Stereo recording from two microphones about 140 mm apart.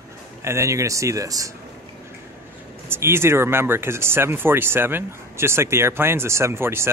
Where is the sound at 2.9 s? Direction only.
20° right (ahead or behind).